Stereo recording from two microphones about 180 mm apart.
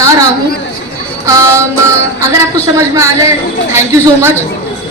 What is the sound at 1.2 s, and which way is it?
A woman's voice, 15° right (ahead or behind).